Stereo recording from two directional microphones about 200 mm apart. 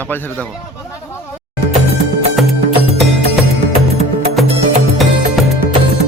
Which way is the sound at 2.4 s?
Centre (ahead or behind).